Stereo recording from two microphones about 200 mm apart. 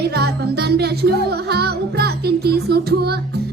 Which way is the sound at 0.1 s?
55° right (ahead or behind).